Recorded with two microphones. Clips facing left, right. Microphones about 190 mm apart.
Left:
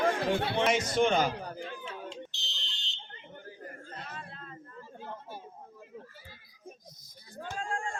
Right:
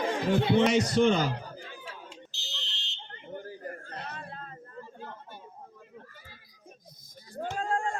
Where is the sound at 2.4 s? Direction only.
5° right (ahead or behind).